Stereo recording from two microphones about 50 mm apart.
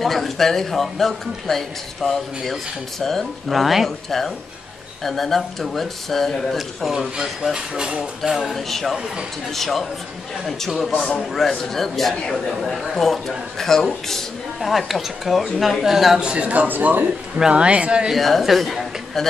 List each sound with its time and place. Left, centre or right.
0.0 s a man's voice: centre
16.2 s speech: right
16.5 s speech: right
17.4 s speech: centre
18.1 s a man's voice: centre